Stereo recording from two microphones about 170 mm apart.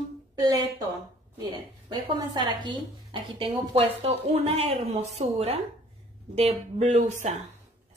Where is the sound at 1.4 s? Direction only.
30° right (ahead or behind).